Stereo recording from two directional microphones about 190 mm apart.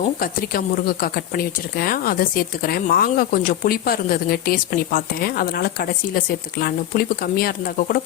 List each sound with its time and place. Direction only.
0.2 s speech: 50° left (ahead or behind)